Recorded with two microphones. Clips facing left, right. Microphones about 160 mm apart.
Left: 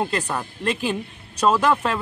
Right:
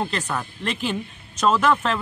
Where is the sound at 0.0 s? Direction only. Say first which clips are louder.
Left 2 dB; 15° left (ahead or behind).